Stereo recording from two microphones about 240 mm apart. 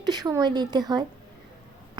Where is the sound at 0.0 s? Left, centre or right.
Centre.